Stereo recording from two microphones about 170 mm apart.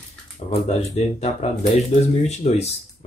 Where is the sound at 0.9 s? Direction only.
35° left (ahead or behind).